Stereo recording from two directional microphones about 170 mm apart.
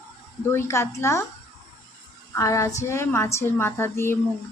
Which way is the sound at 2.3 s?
20° left (ahead or behind).